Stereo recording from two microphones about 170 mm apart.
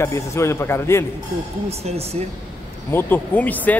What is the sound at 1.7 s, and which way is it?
Speech, 35° right (ahead or behind).